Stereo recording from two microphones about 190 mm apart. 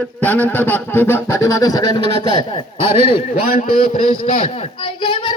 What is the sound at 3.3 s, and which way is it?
A man's voice, 40° left (ahead or behind).